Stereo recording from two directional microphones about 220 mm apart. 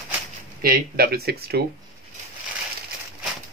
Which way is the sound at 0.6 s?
45° right (ahead or behind).